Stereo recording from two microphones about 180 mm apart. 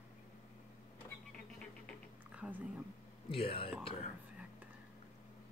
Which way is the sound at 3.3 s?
30° left (ahead or behind).